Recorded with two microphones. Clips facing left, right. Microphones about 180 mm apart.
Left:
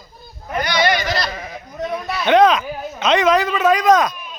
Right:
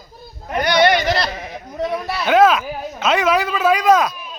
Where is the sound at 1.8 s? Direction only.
30° right (ahead or behind).